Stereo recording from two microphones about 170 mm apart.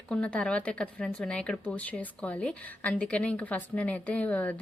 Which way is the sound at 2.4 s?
5° left (ahead or behind).